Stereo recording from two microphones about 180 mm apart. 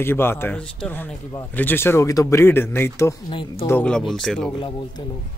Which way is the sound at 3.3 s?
30° left (ahead or behind).